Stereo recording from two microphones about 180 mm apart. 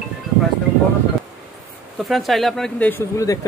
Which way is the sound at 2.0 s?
Centre (ahead or behind).